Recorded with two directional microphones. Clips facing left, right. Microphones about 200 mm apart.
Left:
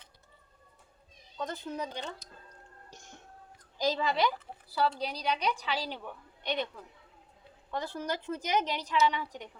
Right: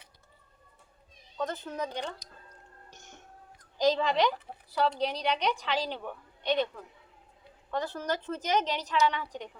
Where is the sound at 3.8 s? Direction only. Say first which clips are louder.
Right 3 dB; 10° left (ahead or behind).